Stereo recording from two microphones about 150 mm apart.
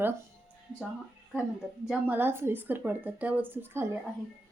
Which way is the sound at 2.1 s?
15° right (ahead or behind).